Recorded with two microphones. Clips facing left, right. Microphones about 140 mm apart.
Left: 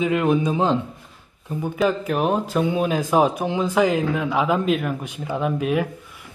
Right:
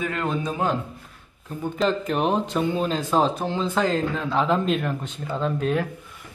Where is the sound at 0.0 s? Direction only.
15° left (ahead or behind).